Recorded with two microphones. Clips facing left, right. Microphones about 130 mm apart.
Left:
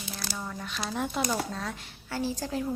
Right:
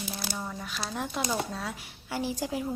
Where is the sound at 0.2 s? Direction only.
15° right (ahead or behind).